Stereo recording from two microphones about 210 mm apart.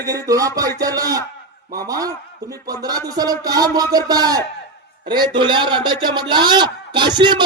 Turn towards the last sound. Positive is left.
turn(degrees=-20)  # may be behind; listen again after turning